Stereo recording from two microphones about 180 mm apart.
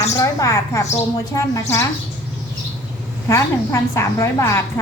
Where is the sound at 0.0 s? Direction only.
15° left (ahead or behind).